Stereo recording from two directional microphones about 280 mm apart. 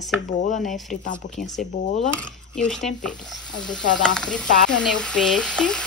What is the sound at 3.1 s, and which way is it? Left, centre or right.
Stir, centre.